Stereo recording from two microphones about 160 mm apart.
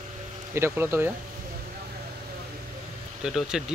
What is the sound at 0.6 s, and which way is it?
Speech, 15° right (ahead or behind).